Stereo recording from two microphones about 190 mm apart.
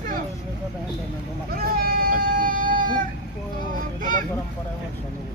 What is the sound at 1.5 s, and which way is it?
Speech, 50° right (ahead or behind).